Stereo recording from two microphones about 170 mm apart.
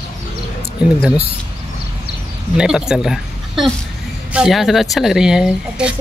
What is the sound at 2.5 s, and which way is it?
Speech, 5° right (ahead or behind).